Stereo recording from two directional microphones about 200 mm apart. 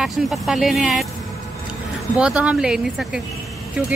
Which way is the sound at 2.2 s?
5° right (ahead or behind).